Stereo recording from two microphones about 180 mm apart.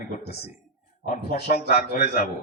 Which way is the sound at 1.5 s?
60° left (ahead or behind).